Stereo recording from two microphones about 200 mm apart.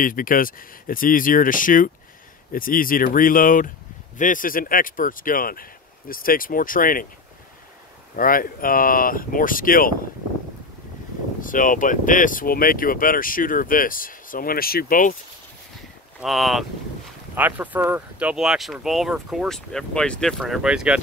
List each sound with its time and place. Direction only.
0.0 s speech: 45° left (ahead or behind)
8.2 s speech: 45° left (ahead or behind)
11.4 s speech: 40° left (ahead or behind)
16.2 s speech: centre (ahead or behind)